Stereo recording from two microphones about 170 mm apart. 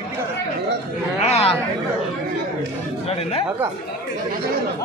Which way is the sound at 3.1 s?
35° left (ahead or behind).